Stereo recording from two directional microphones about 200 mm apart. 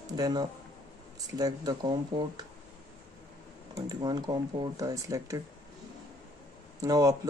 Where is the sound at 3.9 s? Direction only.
20° right (ahead or behind).